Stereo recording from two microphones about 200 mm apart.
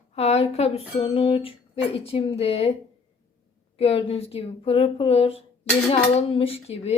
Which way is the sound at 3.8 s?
30° left (ahead or behind).